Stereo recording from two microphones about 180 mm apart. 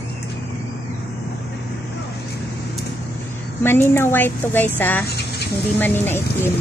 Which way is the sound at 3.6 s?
10° left (ahead or behind).